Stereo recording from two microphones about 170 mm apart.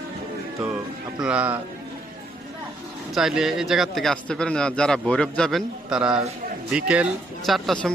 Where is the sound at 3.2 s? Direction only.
5° right (ahead or behind).